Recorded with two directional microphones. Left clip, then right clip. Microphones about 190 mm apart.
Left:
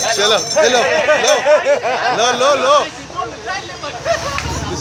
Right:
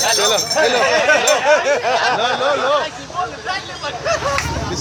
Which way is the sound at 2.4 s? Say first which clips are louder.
Left 4 dB; 55° left (ahead or behind).